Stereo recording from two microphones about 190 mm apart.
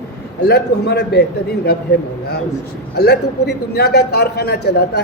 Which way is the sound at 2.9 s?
60° left (ahead or behind).